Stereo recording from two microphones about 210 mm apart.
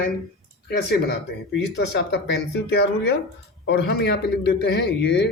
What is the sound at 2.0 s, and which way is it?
A man's voice, 55° left (ahead or behind).